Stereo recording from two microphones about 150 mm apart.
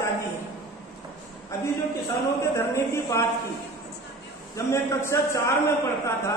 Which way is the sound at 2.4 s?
20° left (ahead or behind).